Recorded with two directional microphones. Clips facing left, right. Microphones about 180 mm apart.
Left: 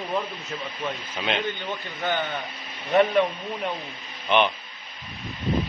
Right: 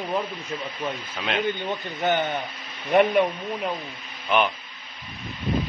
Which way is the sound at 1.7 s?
20° right (ahead or behind).